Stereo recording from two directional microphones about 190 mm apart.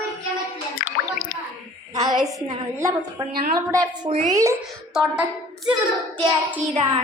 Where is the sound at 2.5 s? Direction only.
15° right (ahead or behind).